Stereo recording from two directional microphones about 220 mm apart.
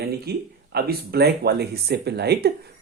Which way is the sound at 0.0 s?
45° right (ahead or behind).